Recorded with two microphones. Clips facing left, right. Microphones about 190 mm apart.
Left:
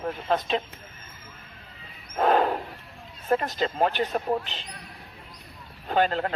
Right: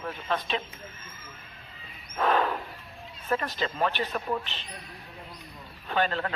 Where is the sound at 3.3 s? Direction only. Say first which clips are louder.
Left 4 dB; 40° left (ahead or behind).